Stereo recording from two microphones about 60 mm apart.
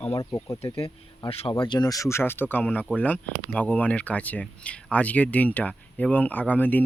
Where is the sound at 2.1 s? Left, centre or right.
Left.